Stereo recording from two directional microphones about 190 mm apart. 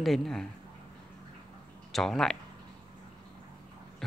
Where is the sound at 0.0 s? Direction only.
Centre (ahead or behind).